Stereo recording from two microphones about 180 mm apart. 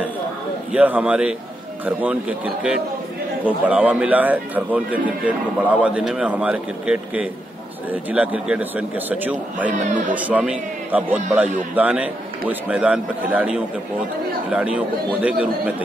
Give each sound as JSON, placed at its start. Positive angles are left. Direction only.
{"t": 0.7, "sound": "a man's voice", "side_deg": -10}
{"t": 9.7, "sound": "speech", "side_deg": -45}
{"t": 10.1, "sound": "a man's voice", "side_deg": -10}